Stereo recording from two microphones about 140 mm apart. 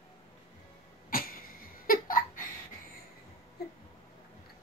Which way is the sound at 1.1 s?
90° left.